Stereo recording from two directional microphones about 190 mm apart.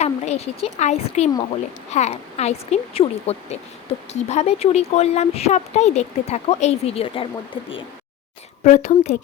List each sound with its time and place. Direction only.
0.0 s speech: 35° left (ahead or behind)
8.6 s speech: 40° left (ahead or behind)